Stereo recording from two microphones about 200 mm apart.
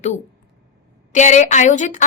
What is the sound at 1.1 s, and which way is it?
Speech, 35° left (ahead or behind).